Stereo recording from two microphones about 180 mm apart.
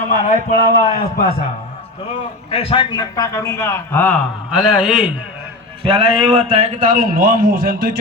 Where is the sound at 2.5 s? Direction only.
30° left (ahead or behind); by 4.2 s 10° left (ahead or behind).